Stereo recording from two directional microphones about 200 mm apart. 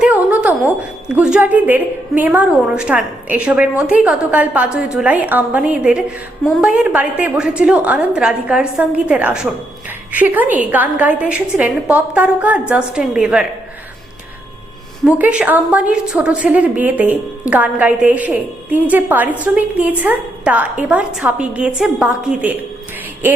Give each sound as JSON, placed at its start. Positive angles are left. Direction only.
{"t": 0.0, "sound": "a sound", "side_deg": -5}
{"t": 2.1, "sound": "a woman's voice", "side_deg": -10}
{"t": 15.0, "sound": "a woman's voice", "side_deg": -5}